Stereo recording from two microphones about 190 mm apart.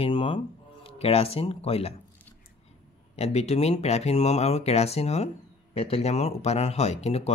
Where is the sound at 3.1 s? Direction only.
35° left (ahead or behind).